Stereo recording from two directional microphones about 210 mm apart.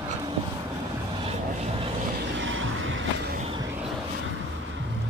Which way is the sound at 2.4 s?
65° right (ahead or behind).